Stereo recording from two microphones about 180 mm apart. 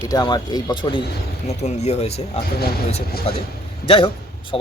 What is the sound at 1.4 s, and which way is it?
Speech, 40° left (ahead or behind).